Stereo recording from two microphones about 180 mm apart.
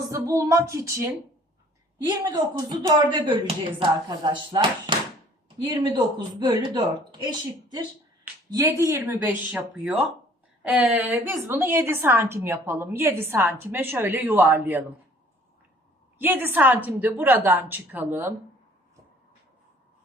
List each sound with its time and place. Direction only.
0.1 s a woman's voice: 15° right (ahead or behind)
9.1 s a woman's voice: 5° right (ahead or behind)
16.1 s a woman's voice: 10° right (ahead or behind)